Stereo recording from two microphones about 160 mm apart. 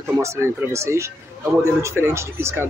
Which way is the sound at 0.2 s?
15° right (ahead or behind).